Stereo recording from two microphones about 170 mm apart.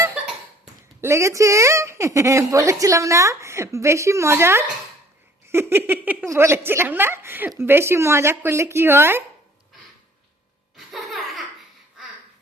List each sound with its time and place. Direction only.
1.0 s a woman's voice: 15° right (ahead or behind)
10.8 s laughter: centre (ahead or behind)